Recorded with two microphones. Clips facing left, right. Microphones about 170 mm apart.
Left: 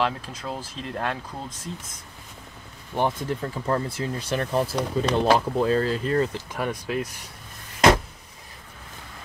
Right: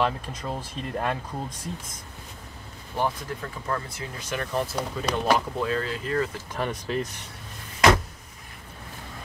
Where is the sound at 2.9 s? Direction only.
25° left (ahead or behind).